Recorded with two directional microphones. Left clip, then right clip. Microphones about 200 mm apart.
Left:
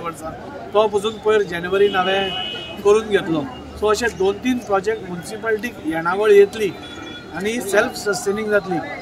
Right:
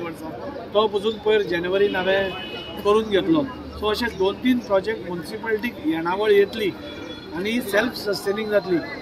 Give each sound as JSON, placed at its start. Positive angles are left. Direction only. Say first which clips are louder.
{"t": 0.7, "sound": "speech", "louder": "left 3 dB", "side_deg": 10}